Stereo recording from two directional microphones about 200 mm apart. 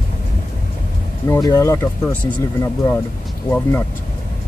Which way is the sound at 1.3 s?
15° left (ahead or behind).